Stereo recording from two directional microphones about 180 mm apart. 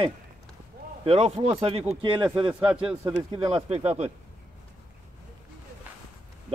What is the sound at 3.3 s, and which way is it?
Speech, 30° right (ahead or behind).